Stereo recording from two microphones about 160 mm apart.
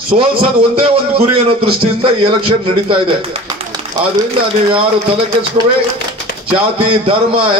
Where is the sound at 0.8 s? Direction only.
35° right (ahead or behind).